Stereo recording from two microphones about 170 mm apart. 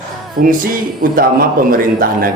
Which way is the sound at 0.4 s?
55° right (ahead or behind).